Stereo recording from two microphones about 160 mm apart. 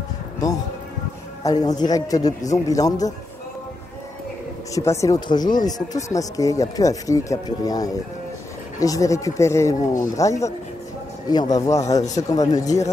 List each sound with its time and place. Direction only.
1.4 s speech: 25° left (ahead or behind)
4.7 s speech: 20° left (ahead or behind)